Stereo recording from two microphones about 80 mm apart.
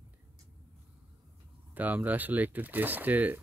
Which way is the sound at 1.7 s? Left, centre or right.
Right.